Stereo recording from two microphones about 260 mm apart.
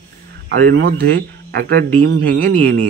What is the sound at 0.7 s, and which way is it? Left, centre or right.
A man's voice, right.